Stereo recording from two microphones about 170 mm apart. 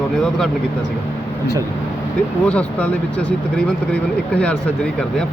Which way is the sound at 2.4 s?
10° left (ahead or behind).